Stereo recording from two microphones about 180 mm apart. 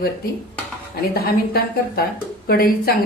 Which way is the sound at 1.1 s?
60° left (ahead or behind).